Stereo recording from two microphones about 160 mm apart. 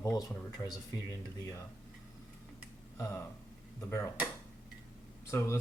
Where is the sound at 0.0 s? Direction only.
20° left (ahead or behind).